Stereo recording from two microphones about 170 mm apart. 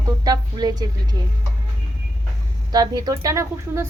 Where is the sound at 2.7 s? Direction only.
25° right (ahead or behind).